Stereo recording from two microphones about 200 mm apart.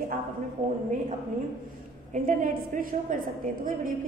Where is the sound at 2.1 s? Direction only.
40° right (ahead or behind).